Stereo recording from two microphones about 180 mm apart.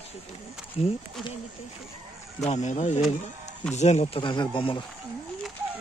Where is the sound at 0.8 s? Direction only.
35° left (ahead or behind).